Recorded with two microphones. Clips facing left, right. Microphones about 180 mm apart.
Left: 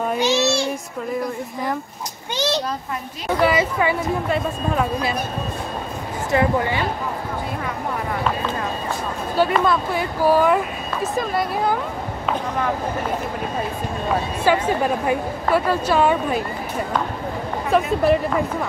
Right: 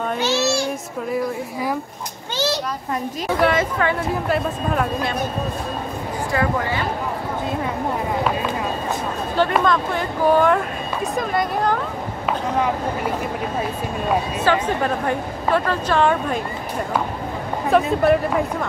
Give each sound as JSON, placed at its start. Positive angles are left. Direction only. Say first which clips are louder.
{"t": 0.2, "sound": "child singing", "louder": "left 2 dB", "side_deg": 15}
{"t": 2.3, "sound": "children playing", "louder": "even", "side_deg": 20}
{"t": 3.3, "sound": "speech", "louder": "left 1 dB", "side_deg": 5}
{"t": 6.3, "sound": "speech", "louder": "left 3 dB", "side_deg": 20}
{"t": 9.7, "sound": "speech", "louder": "even", "side_deg": 5}
{"t": 14.4, "sound": "speech", "louder": "left 4 dB", "side_deg": 10}
{"t": 17.6, "sound": "speech", "louder": "right 1 dB", "side_deg": 0}